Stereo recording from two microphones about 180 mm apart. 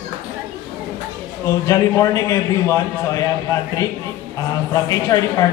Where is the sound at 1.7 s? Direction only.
20° left (ahead or behind).